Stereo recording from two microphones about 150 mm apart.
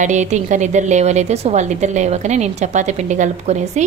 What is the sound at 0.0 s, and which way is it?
A woman's voice, 50° right (ahead or behind).